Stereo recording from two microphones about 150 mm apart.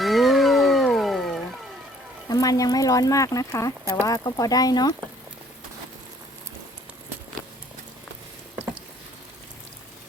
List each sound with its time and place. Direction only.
0.0 s music: centre (ahead or behind)
2.3 s speech: 25° left (ahead or behind)